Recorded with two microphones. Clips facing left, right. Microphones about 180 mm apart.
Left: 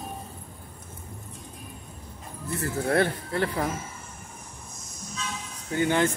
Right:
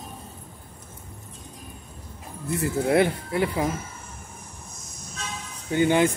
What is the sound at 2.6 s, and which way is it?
Speech, 15° right (ahead or behind).